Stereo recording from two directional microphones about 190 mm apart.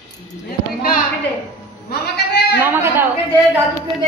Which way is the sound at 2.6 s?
10° right (ahead or behind).